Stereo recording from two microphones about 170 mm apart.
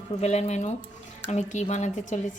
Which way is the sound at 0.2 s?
40° left (ahead or behind).